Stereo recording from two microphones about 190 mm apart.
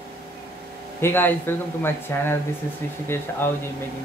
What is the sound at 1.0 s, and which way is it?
Speech, 10° left (ahead or behind).